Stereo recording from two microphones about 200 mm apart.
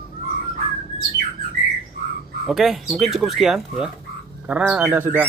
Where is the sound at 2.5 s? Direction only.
Centre (ahead or behind).